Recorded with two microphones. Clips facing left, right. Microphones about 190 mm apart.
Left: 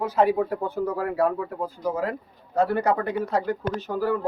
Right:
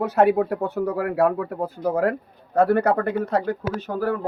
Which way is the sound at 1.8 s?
55° right (ahead or behind).